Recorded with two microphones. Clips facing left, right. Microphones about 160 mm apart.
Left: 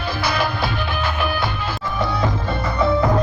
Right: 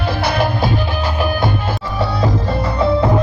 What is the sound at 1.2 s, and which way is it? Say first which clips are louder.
Music: right 5 dB; 45° right (ahead or behind).